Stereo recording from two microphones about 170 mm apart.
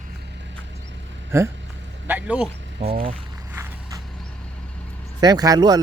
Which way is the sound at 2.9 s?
60° right (ahead or behind).